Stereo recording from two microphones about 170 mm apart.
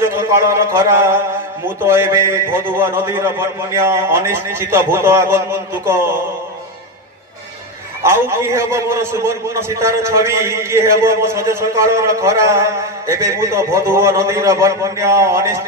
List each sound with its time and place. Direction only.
0.0 s a man's voice: 15° right (ahead or behind)
8.0 s a man's voice: 15° right (ahead or behind)